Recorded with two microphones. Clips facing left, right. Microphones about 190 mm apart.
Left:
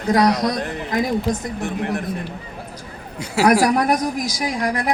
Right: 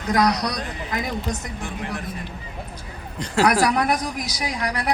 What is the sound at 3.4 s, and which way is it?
A woman's voice, 45° left (ahead or behind).